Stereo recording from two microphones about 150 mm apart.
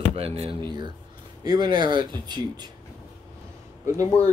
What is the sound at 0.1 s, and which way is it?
Speech, 45° right (ahead or behind).